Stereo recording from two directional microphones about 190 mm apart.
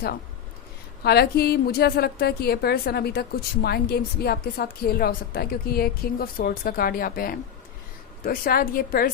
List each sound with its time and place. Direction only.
1.0 s a woman's voice: 55° left (ahead or behind)